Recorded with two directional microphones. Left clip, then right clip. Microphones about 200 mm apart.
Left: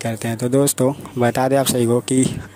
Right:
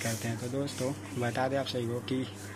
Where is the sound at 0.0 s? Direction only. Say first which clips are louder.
Left 12 dB; 55° left (ahead or behind).